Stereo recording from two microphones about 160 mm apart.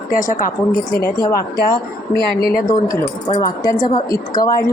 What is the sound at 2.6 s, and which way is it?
A woman's voice, 25° left (ahead or behind).